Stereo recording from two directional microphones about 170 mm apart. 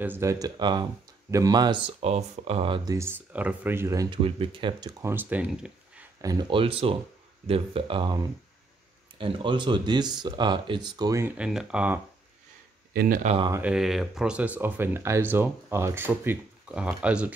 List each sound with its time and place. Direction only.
0.0 s speech: 15° right (ahead or behind)
1.9 s speech: 40° right (ahead or behind); by 4.2 s 20° right (ahead or behind)
4.2 s speech: 30° right (ahead or behind)
5.1 s speech: 10° right (ahead or behind)
6.2 s speech: 25° right (ahead or behind); by 12.0 s 5° right (ahead or behind)
12.9 s speech: 60° right (ahead or behind)
13.2 s speech: 40° right (ahead or behind)
13.5 s speech: 10° right (ahead or behind)